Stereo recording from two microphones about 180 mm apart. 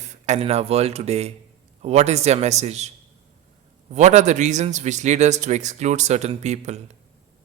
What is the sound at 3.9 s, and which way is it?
A man's voice, 40° right (ahead or behind).